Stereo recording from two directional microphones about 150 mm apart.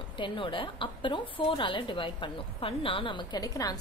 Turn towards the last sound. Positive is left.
turn(degrees=25)  # may be behind; listen again after turning